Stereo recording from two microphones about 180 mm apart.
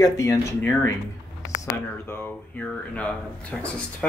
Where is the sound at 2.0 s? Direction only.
10° left (ahead or behind).